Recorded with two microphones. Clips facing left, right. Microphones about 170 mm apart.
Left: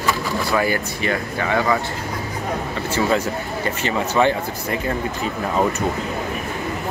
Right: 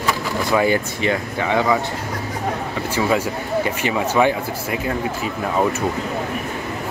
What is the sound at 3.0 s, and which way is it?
Speech, 10° right (ahead or behind).